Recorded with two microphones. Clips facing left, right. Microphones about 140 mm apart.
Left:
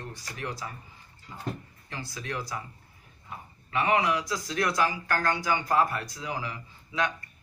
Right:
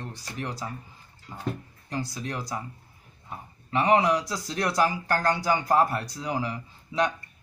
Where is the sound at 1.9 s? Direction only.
35° right (ahead or behind).